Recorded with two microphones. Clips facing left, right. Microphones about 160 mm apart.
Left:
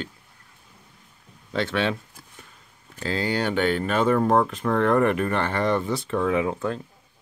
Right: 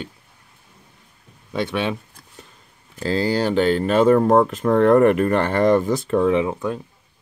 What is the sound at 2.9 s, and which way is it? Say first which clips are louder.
Speech: right 5 dB; 35° right (ahead or behind).